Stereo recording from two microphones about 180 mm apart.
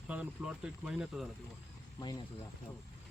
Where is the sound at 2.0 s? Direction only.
25° left (ahead or behind).